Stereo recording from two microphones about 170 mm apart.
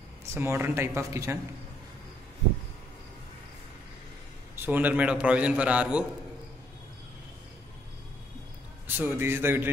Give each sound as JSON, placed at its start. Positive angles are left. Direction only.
{"t": 0.2, "sound": "a man's voice", "side_deg": -15}
{"t": 4.6, "sound": "a man's voice", "side_deg": -10}
{"t": 8.8, "sound": "a man's voice", "side_deg": -10}